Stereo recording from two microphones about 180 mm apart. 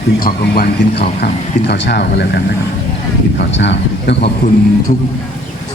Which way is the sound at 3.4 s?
75° left (ahead or behind).